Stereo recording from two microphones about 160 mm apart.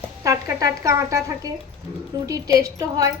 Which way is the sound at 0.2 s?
20° right (ahead or behind).